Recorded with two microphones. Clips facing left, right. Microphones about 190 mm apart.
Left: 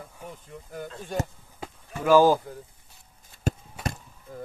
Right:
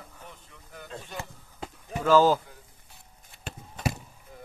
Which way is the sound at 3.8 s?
10° left (ahead or behind).